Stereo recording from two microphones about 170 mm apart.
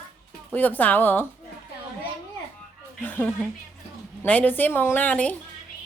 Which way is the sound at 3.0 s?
10° left (ahead or behind).